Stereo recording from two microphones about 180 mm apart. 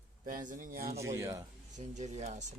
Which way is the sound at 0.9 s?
15° right (ahead or behind).